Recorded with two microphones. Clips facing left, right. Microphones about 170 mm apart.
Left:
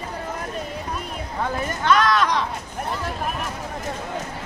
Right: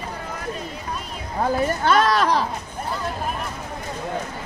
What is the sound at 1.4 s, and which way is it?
Speech, 35° right (ahead or behind).